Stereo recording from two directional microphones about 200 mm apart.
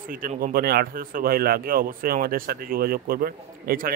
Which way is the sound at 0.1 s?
45° right (ahead or behind).